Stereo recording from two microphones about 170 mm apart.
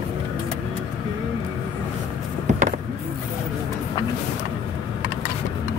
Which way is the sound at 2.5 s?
45° right (ahead or behind).